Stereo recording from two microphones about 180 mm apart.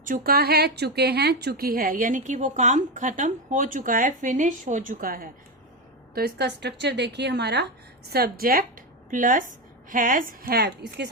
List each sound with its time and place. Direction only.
0.0 s a woman's voice: 50° right (ahead or behind)
6.1 s a woman's voice: 65° right (ahead or behind)